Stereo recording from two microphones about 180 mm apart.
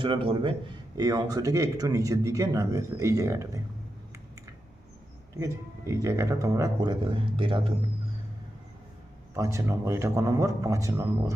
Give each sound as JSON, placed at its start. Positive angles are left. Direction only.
{"t": 0.0, "sound": "speech", "side_deg": -30}
{"t": 5.4, "sound": "speech", "side_deg": -15}
{"t": 9.3, "sound": "speech", "side_deg": -15}